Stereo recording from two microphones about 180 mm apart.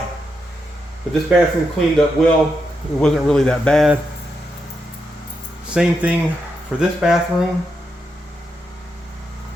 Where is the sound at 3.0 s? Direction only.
5° left (ahead or behind).